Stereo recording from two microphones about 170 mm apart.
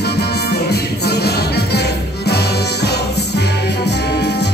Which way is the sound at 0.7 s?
70° left (ahead or behind).